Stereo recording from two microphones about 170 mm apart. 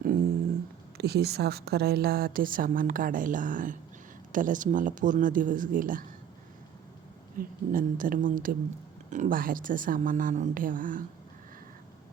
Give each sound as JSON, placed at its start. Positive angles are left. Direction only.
{"t": 0.9, "sound": "a woman's voice", "side_deg": -70}
{"t": 7.3, "sound": "a woman's voice", "side_deg": -55}